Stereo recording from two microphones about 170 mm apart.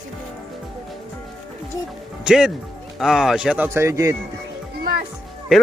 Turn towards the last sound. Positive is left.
turn(degrees=0)  # may be behind; listen again after turning